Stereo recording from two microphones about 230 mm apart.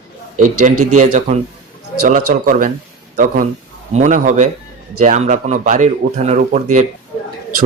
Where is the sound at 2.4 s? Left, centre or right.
Right.